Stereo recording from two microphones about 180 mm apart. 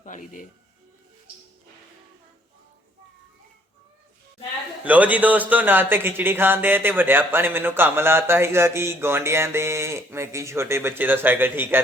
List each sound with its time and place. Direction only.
0.0 s a man's voice: 45° left (ahead or behind)
4.8 s speech: 10° right (ahead or behind)